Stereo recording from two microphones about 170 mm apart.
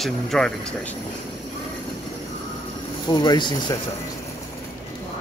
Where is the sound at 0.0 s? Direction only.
5° left (ahead or behind).